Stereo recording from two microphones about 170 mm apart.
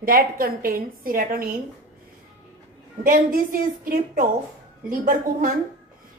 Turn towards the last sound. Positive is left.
turn(degrees=-55)  # may be behind; listen again after turning